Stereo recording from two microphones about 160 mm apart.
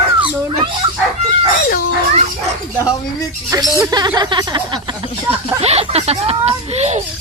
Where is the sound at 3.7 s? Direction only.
25° right (ahead or behind).